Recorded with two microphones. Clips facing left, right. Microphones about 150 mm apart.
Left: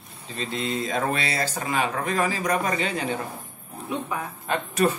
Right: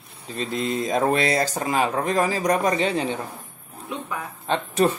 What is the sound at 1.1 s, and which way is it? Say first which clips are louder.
Speech: right 6 dB; 40° right (ahead or behind).